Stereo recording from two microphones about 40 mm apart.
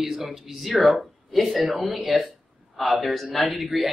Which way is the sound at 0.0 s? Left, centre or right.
Centre.